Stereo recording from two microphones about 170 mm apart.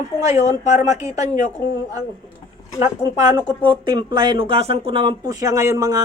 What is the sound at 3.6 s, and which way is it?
Speech, 25° right (ahead or behind).